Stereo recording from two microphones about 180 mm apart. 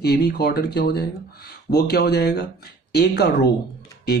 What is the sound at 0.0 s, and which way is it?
Speech, 65° left (ahead or behind).